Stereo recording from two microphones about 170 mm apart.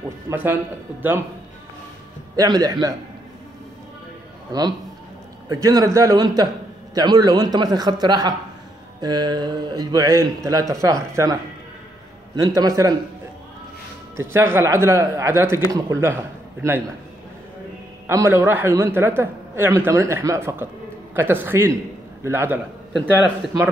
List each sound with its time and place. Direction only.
0.3 s speech: 15° right (ahead or behind)
2.3 s a man's voice: 25° right (ahead or behind)
4.5 s a man's voice: 25° right (ahead or behind)
12.4 s a man's voice: 20° right (ahead or behind)
14.1 s a man's voice: 15° right (ahead or behind)
18.0 s a man's voice: 15° right (ahead or behind)